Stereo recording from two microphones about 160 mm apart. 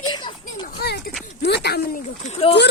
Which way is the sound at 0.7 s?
80° left.